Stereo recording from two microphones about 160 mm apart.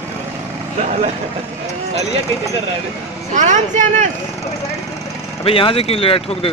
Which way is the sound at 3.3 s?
50° right (ahead or behind).